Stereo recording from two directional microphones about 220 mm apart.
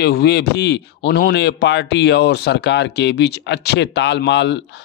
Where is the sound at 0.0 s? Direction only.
50° left (ahead or behind).